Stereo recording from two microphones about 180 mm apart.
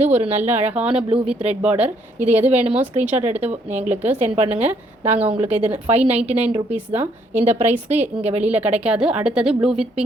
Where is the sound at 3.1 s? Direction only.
40° right (ahead or behind).